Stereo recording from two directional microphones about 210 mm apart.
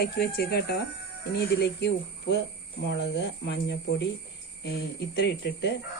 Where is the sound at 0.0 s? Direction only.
50° left (ahead or behind).